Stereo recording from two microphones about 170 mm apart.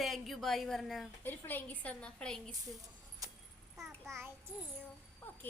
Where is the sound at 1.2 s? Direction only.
10° left (ahead or behind).